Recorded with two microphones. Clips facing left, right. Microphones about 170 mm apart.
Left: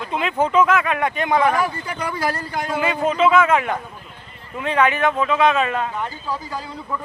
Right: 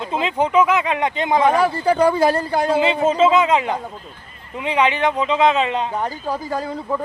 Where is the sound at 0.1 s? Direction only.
30° right (ahead or behind).